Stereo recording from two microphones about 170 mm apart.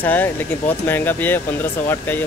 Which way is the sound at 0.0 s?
10° left (ahead or behind).